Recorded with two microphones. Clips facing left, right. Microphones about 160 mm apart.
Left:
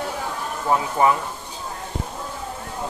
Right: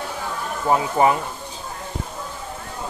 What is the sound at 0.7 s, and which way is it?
Speech, 20° right (ahead or behind).